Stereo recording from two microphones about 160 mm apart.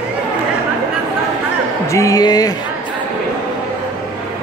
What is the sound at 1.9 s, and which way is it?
Speech, 20° left (ahead or behind).